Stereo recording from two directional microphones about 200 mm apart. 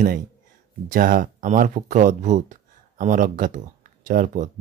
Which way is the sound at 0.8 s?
45° right (ahead or behind).